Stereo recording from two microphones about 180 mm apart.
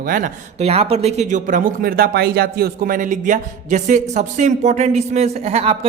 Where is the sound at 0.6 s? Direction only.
35° right (ahead or behind).